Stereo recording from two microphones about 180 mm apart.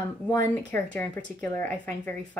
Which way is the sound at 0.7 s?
5° left (ahead or behind).